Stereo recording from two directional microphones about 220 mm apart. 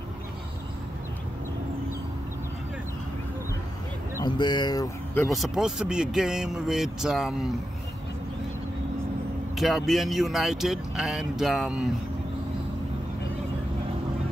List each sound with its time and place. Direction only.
4.2 s speech: 20° left (ahead or behind)
5.3 s speech: centre (ahead or behind)
9.6 s speech: centre (ahead or behind)